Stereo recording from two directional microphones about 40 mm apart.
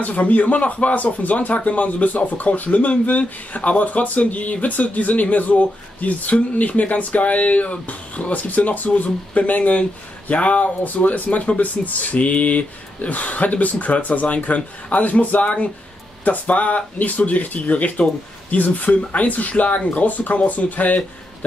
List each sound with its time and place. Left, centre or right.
0.0 s speech: left